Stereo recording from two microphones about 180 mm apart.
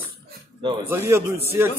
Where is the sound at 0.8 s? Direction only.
15° right (ahead or behind).